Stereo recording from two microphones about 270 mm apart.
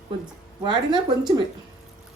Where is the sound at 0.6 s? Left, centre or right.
Centre.